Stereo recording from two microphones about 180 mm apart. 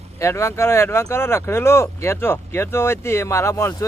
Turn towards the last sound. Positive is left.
turn(degrees=15)  # may be behind; listen again after turning